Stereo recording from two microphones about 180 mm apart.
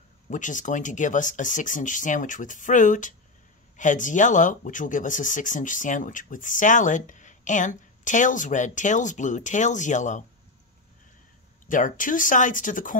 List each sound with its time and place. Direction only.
0.3 s speech: 45° left (ahead or behind)
11.6 s speech: 45° left (ahead or behind)